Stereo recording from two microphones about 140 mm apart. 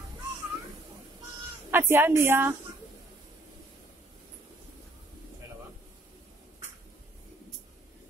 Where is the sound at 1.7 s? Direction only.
15° right (ahead or behind).